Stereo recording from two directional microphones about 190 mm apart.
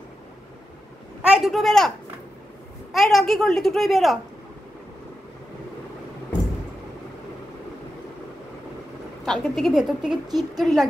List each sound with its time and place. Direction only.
1.2 s a man's voice: 5° right (ahead or behind)
2.9 s a child's voice: centre (ahead or behind)
9.2 s a child's voice: centre (ahead or behind)
10.2 s speech: 20° right (ahead or behind)
10.6 s a child's voice: centre (ahead or behind)